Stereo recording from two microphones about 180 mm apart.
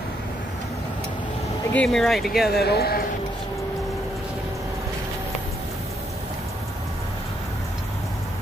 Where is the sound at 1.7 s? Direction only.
Centre (ahead or behind).